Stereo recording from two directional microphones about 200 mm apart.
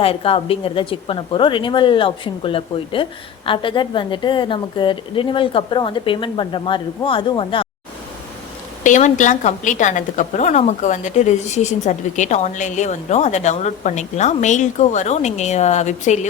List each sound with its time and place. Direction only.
0.0 s a woman's voice: 30° left (ahead or behind)
8.8 s a woman's voice: 40° left (ahead or behind)